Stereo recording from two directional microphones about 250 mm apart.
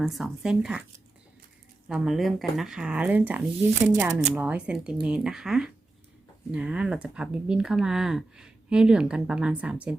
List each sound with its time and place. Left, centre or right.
0.0 s speech: centre
4.1 s speech: right
4.4 s speech: centre